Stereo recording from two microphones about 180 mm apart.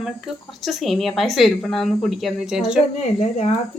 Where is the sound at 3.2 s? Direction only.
35° left (ahead or behind).